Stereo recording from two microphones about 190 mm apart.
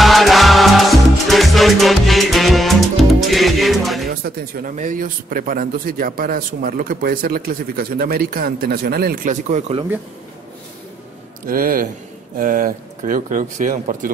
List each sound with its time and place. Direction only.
0.0 s music: centre (ahead or behind)
4.1 s speech: 50° right (ahead or behind); by 9.8 s 35° right (ahead or behind)
11.4 s speech: 50° right (ahead or behind)